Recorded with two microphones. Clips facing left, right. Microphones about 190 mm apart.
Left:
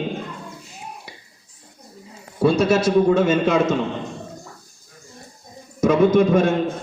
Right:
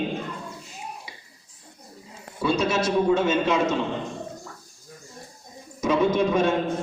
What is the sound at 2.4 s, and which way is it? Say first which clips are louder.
A man's voice: left 6 dB; 55° left (ahead or behind).